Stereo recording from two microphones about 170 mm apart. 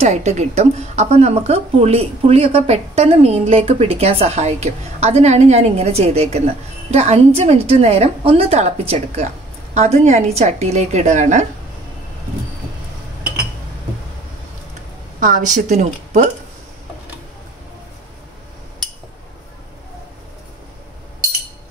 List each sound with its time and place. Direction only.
0.0 s a woman's voice: 40° right (ahead or behind)
15.1 s a woman's voice: 50° right (ahead or behind)